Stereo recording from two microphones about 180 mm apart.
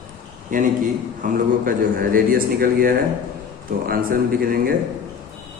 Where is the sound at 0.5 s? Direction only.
45° right (ahead or behind).